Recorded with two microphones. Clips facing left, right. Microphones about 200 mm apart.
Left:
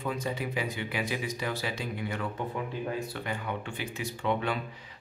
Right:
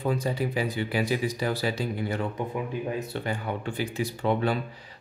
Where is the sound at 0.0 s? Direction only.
35° right (ahead or behind).